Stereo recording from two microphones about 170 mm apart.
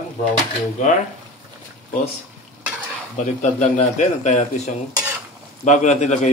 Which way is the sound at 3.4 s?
40° left (ahead or behind).